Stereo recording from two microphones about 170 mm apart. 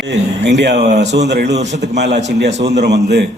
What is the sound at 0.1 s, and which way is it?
Speech, 90° right.